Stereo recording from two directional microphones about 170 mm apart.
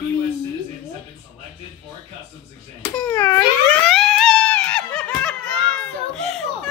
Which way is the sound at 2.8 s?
10° left (ahead or behind).